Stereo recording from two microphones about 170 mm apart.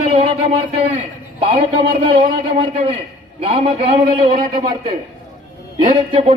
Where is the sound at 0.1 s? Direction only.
35° right (ahead or behind).